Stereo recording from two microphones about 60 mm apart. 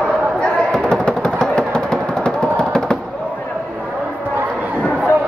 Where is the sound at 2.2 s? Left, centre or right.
Centre.